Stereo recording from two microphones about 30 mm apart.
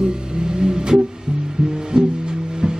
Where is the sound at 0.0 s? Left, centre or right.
Right.